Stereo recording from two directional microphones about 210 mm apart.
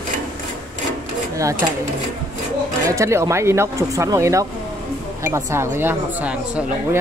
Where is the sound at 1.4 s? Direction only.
15° right (ahead or behind).